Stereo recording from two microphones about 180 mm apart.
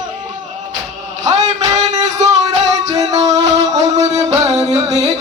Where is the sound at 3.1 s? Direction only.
40° right (ahead or behind).